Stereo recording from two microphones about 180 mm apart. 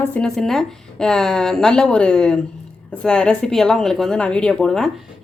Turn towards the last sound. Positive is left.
turn(degrees=5)  # may be behind; listen again after turning